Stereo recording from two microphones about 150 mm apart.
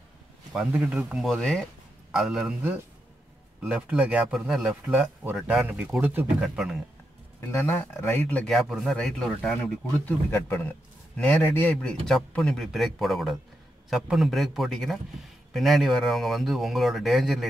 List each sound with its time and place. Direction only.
0.5 s a man's voice: 5° right (ahead or behind)
7.3 s speech: 15° left (ahead or behind)
10.0 s a man's voice: 15° left (ahead or behind); by 17.5 s centre (ahead or behind)